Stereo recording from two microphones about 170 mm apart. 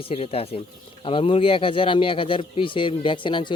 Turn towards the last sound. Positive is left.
turn(degrees=30)  # may be behind; listen again after turning